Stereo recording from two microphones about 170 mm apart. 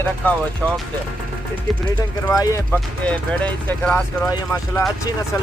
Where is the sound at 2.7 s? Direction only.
5° left (ahead or behind).